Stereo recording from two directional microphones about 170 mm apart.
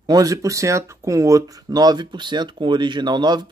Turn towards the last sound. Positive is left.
turn(degrees=-25)  # may be behind; listen again after turning